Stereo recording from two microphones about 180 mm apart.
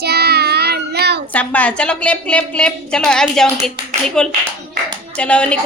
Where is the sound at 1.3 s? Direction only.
10° left (ahead or behind).